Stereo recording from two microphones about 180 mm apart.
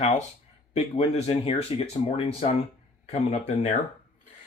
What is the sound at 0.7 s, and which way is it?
Speech, 35° left (ahead or behind).